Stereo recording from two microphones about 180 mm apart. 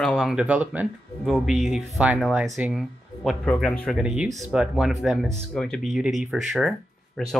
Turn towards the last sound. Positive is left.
turn(degrees=0)  # may be behind; listen again after turning